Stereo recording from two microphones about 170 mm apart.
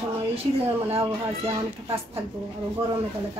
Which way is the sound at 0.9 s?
35° right (ahead or behind).